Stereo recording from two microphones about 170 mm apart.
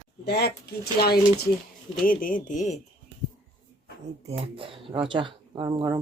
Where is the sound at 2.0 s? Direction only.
55° left (ahead or behind).